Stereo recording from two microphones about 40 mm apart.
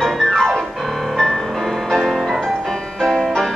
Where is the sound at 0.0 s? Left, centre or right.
Centre.